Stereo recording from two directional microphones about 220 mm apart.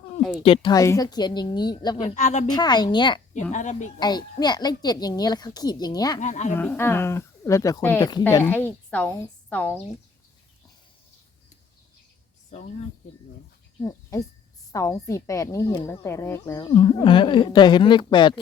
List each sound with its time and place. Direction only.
0.4 s a woman's voice: 25° left (ahead or behind)
2.0 s a woman's voice: 35° left (ahead or behind)
2.5 s a woman's voice: 20° left (ahead or behind)
3.5 s a woman's voice: 35° left (ahead or behind)
4.0 s a child's voice: 20° left (ahead or behind)
6.1 s a woman's voice: 35° left (ahead or behind)
6.5 s a child's voice: 10° left (ahead or behind)
12.5 s speech: 30° left (ahead or behind)
13.8 s a child's voice: 15° left (ahead or behind)
16.7 s a woman's voice: 25° left (ahead or behind)